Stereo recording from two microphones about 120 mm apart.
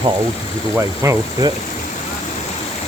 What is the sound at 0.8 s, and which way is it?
Speech, 30° right (ahead or behind).